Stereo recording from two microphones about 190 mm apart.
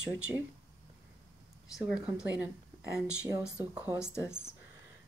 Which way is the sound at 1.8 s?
5° right (ahead or behind).